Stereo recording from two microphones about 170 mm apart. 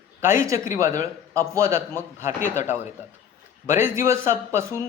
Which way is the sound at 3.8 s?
15° right (ahead or behind).